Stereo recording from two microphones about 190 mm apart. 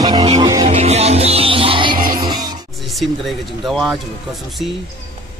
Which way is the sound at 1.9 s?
50° right (ahead or behind).